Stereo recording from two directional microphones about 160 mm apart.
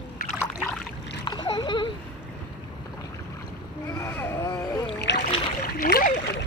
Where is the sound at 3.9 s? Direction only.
15° left (ahead or behind).